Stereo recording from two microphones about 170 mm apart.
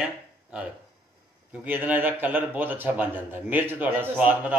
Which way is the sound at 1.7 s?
10° right (ahead or behind).